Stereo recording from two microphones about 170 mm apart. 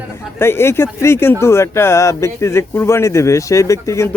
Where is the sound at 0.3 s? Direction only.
15° left (ahead or behind).